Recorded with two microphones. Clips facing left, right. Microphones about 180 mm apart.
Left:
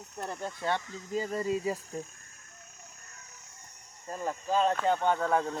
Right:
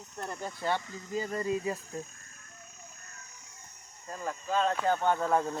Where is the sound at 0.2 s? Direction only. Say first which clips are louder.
Left 1 dB; centre (ahead or behind).